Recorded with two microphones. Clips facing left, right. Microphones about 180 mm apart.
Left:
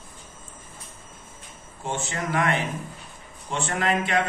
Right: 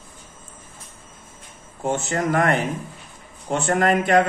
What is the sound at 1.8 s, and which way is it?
Speech, 45° right (ahead or behind).